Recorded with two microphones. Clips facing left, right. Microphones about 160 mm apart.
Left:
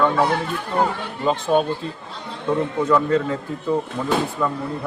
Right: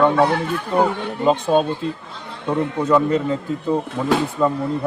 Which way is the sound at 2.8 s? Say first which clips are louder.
Right 2 dB; 20° right (ahead or behind).